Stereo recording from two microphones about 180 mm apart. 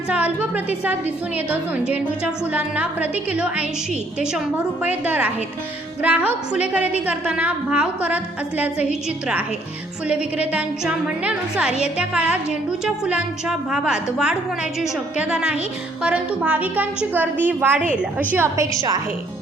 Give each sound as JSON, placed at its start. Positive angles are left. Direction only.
{"t": 0.1, "sound": "a woman's voice", "side_deg": -10}
{"t": 10.1, "sound": "a woman's voice", "side_deg": -5}